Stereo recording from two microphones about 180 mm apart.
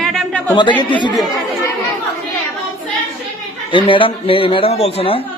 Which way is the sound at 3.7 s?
30° left (ahead or behind).